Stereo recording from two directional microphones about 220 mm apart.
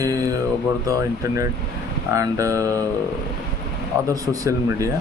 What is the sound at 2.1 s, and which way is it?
Speech, 15° right (ahead or behind).